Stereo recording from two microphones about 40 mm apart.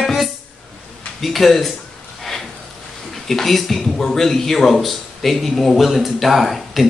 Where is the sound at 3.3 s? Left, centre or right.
Centre.